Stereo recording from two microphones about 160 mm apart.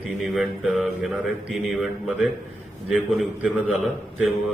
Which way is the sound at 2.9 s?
Centre (ahead or behind).